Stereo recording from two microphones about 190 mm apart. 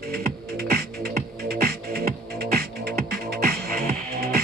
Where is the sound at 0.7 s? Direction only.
55° right (ahead or behind).